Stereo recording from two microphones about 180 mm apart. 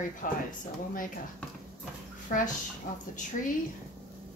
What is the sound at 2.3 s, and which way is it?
Speech, 45° left (ahead or behind).